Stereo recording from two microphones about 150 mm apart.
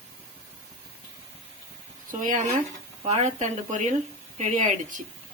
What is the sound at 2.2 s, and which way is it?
Speech, 55° right (ahead or behind).